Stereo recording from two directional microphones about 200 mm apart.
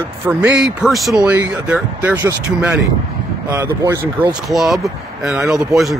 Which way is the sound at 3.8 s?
15° right (ahead or behind).